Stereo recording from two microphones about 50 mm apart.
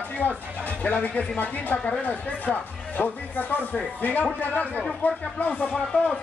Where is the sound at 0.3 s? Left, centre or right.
Left.